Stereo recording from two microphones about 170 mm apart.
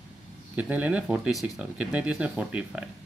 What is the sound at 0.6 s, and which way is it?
Speech, 10° right (ahead or behind).